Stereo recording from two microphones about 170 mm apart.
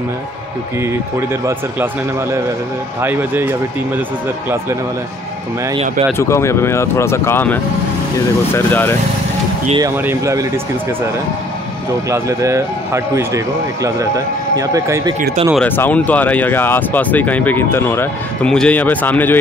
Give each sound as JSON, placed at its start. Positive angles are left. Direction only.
{"t": 1.3, "sound": "a man's voice", "side_deg": -15}
{"t": 3.0, "sound": "a man's voice", "side_deg": -10}
{"t": 6.1, "sound": "speech", "side_deg": 15}
{"t": 9.8, "sound": "speech", "side_deg": -15}
{"t": 12.1, "sound": "a man's voice", "side_deg": -20}
{"t": 15.5, "sound": "speech", "side_deg": 10}